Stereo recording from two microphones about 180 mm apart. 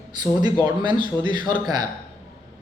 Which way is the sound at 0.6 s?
25° right (ahead or behind).